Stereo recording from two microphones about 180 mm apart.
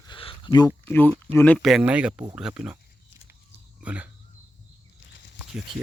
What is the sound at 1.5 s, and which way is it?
Speech, centre (ahead or behind).